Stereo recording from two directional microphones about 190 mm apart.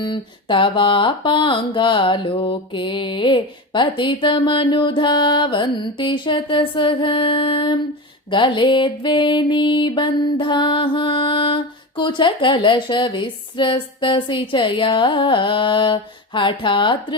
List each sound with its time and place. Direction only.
0.0 s music: 25° left (ahead or behind)